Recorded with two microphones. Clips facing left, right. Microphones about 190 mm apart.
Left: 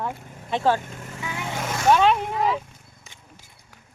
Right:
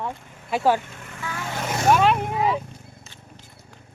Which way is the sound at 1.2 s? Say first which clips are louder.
Even; 20° left (ahead or behind).